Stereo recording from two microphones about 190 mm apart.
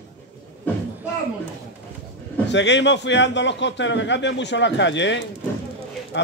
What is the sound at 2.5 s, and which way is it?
A man's voice, 70° left (ahead or behind).